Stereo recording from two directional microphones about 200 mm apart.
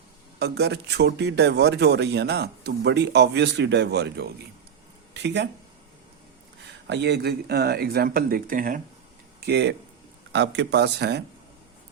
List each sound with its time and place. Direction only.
0.3 s speech: 55° right (ahead or behind)
6.8 s speech: 60° right (ahead or behind); by 8.8 s 45° right (ahead or behind)
9.4 s speech: 55° right (ahead or behind)